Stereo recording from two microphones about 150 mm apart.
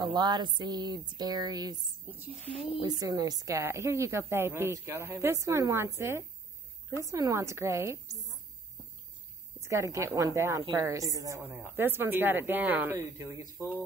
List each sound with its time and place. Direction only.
0.0 s a woman's voice: 30° right (ahead or behind)
2.1 s a woman's voice: 10° right (ahead or behind)
3.0 s a woman's voice: 25° right (ahead or behind)
9.6 s a woman's voice: 20° right (ahead or behind)